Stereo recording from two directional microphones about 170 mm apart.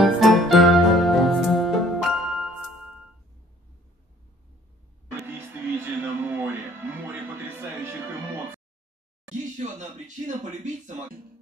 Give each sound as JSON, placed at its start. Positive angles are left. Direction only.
{"t": 0.0, "sound": "music", "side_deg": 0}
{"t": 5.2, "sound": "a sound", "side_deg": -10}
{"t": 7.3, "sound": "music", "side_deg": -15}
{"t": 9.6, "sound": "speech", "side_deg": -45}